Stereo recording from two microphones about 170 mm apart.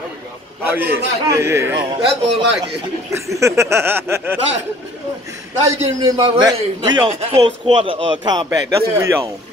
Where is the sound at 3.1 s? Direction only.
15° right (ahead or behind).